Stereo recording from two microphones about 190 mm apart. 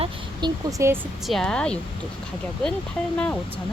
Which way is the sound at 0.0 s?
20° right (ahead or behind).